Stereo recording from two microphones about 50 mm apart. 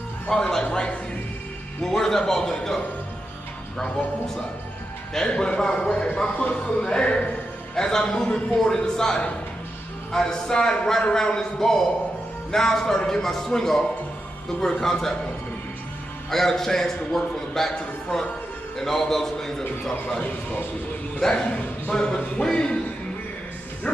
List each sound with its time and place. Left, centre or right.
0.3 s a man's voice: centre
1.8 s a man's voice: centre
5.1 s a man's voice: centre
6.4 s music: left
7.7 s a man's voice: centre
16.3 s a man's voice: centre